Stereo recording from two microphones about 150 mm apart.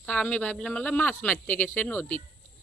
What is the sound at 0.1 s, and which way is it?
Speech, 10° left (ahead or behind).